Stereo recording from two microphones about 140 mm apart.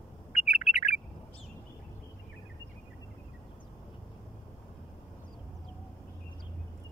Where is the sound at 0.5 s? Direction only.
50° left (ahead or behind).